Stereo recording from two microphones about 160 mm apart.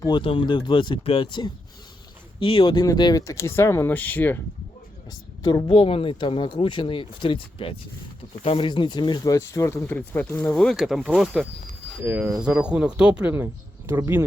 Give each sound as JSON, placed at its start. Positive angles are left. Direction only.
{"t": 0.0, "sound": "speech", "side_deg": 30}
{"t": 5.4, "sound": "speech", "side_deg": 25}